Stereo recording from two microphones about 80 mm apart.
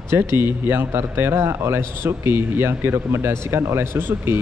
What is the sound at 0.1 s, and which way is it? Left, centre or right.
A man's voice, right.